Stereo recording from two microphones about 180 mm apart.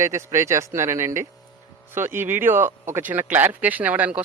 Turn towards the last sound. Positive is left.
turn(degrees=-10)  # may be behind; listen again after turning